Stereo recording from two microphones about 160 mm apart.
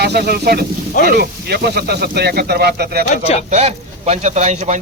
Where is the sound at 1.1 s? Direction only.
90° right.